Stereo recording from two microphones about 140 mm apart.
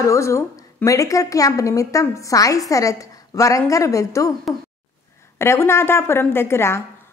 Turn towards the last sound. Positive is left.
turn(degrees=20)  # may be behind; listen again after turning